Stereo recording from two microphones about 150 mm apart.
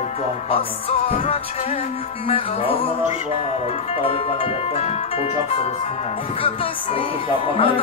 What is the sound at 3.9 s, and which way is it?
Speech, 40° left (ahead or behind).